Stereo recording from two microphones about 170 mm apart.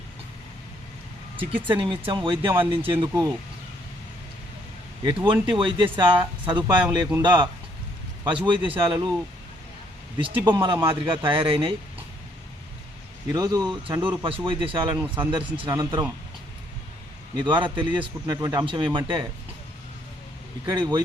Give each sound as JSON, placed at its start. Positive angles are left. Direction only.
{"t": 1.4, "sound": "speech", "side_deg": -30}
{"t": 5.2, "sound": "speech", "side_deg": -30}
{"t": 10.2, "sound": "speech", "side_deg": -30}
{"t": 13.3, "sound": "speech", "side_deg": -20}
{"t": 17.3, "sound": "speech", "side_deg": -25}
{"t": 20.7, "sound": "speech", "side_deg": -25}